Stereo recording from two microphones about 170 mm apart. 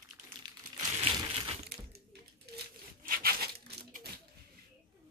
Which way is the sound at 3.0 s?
60° right (ahead or behind).